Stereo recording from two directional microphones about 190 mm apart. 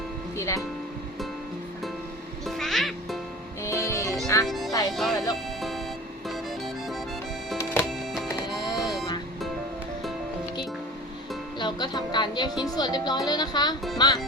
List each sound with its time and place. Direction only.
0.3 s speech: 15° left (ahead or behind)
2.5 s music: centre (ahead or behind)
3.6 s music: 15° left (ahead or behind)
4.4 s music: centre (ahead or behind)
7.6 s music: 10° left (ahead or behind)
7.9 s music: centre (ahead or behind)
8.3 s music: 20° left (ahead or behind)
8.7 s music: centre (ahead or behind)
11.6 s music: 25° left (ahead or behind)
13.2 s speech: 20° left (ahead or behind)